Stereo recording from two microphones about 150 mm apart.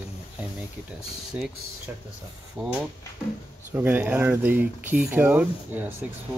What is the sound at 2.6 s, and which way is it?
Speech, 5° right (ahead or behind).